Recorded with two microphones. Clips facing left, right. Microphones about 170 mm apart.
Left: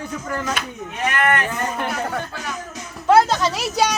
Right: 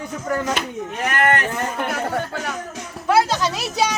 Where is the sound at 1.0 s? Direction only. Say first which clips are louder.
Even; 40° right (ahead or behind).